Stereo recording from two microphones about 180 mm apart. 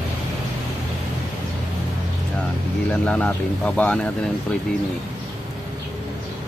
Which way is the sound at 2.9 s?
5° left (ahead or behind).